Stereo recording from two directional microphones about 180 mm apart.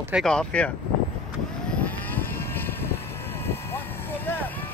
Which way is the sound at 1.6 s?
10° left (ahead or behind).